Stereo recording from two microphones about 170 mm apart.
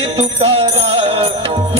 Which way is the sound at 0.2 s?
35° right (ahead or behind).